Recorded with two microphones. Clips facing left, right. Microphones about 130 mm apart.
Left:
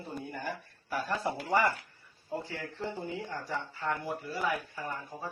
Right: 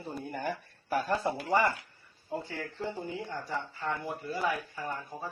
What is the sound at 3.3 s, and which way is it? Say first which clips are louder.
Speech: right 1 dB; 20° right (ahead or behind).